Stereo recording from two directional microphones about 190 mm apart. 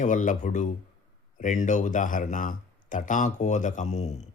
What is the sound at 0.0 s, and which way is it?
Speech, 40° left (ahead or behind).